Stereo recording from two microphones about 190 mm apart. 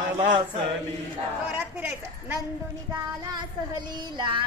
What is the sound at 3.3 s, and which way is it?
Child singing, 20° right (ahead or behind).